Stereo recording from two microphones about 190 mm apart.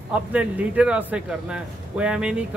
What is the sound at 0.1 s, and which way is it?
A man's voice, 5° right (ahead or behind).